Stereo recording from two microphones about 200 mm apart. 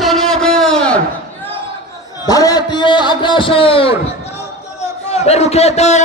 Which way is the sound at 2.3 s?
20° left (ahead or behind).